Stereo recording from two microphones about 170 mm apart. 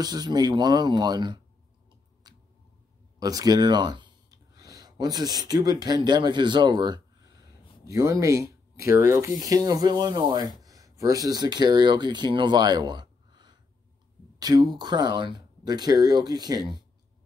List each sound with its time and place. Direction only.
0.0 s speech: 25° right (ahead or behind)
2.3 s squish: 25° right (ahead or behind)
3.2 s a sound: 20° right (ahead or behind)
4.8 s speech: 25° right (ahead or behind)